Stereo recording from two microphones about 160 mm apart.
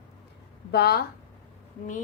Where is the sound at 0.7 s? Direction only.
80° left.